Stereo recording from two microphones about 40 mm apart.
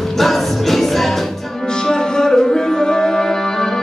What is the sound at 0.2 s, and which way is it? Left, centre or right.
Music, centre.